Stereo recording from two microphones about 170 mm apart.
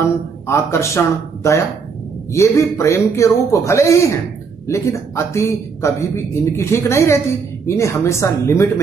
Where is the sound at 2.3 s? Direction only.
15° left (ahead or behind).